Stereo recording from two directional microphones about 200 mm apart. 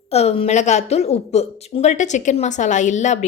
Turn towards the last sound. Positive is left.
turn(degrees=35)  # may be behind; listen again after turning